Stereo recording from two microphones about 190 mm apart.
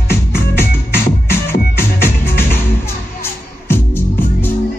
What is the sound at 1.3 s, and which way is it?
Music, 10° left (ahead or behind).